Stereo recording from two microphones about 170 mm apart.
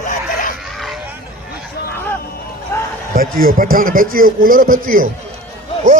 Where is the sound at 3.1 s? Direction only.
60° right (ahead or behind).